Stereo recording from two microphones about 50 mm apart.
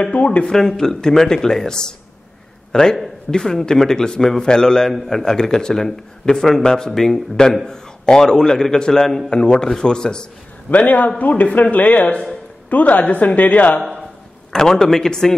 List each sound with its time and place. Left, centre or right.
0.0 s speech: left
0.5 s a man's voice: centre
10.7 s a woman's voice: left
14.5 s a man's voice: centre